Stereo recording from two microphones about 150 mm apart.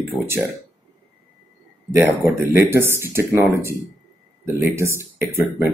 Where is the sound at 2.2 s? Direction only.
15° right (ahead or behind).